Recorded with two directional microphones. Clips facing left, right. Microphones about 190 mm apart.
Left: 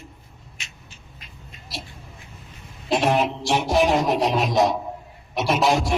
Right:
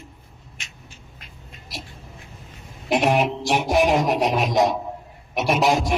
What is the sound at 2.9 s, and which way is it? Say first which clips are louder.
A man's voice: right 1 dB; 15° right (ahead or behind).